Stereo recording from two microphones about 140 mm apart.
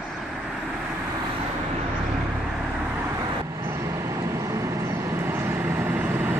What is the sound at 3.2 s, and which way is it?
Vehicle, 25° right (ahead or behind).